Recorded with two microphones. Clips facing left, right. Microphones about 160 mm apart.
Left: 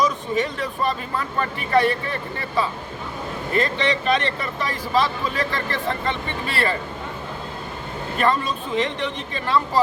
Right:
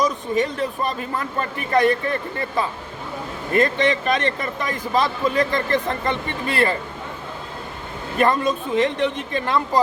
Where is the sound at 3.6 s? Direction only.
50° right (ahead or behind).